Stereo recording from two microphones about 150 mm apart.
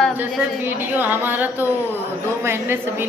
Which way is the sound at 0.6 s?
10° right (ahead or behind).